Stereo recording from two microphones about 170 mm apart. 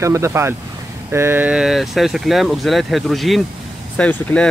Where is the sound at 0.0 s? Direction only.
15° right (ahead or behind).